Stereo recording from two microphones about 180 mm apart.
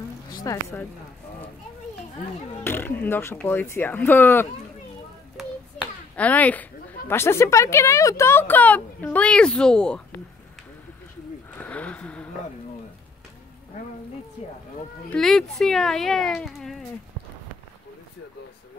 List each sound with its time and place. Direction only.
0.4 s speech: 15° left (ahead or behind)
2.6 s a child's voice: 10° left (ahead or behind)
11.5 s a sound: 10° left (ahead or behind)
14.4 s speech: 40° left (ahead or behind)
15.0 s speech: 5° left (ahead or behind)